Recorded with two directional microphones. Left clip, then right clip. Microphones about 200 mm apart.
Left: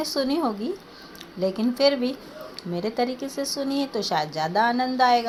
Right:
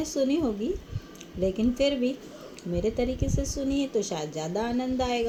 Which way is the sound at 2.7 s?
45° left (ahead or behind).